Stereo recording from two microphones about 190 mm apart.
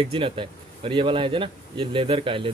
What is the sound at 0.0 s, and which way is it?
Speech, 25° right (ahead or behind).